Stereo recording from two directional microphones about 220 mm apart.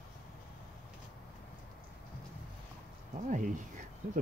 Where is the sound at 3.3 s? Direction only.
35° right (ahead or behind).